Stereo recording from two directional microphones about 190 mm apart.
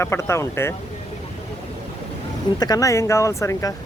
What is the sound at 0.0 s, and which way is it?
Speech, 15° left (ahead or behind).